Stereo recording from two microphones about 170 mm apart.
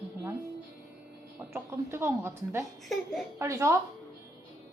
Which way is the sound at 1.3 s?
15° right (ahead or behind).